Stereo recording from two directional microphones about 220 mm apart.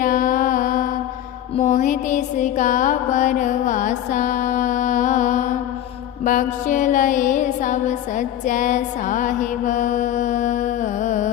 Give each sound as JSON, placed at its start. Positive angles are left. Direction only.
{"t": 0.0, "sound": "music", "side_deg": 40}